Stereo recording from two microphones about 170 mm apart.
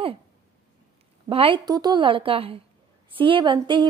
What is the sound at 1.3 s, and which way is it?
A woman's voice, 30° right (ahead or behind).